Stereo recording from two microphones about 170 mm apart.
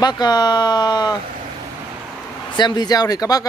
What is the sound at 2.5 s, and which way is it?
Speech, 25° left (ahead or behind).